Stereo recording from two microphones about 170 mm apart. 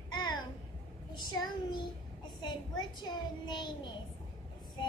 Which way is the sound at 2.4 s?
25° left (ahead or behind).